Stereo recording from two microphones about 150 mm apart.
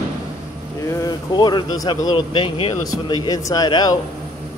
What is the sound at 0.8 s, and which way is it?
Speech, 25° left (ahead or behind).